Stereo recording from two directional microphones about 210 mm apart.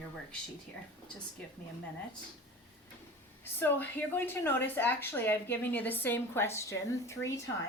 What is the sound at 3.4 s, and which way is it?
Speech, 10° left (ahead or behind).